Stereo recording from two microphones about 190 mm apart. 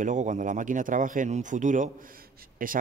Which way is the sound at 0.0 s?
40° right (ahead or behind).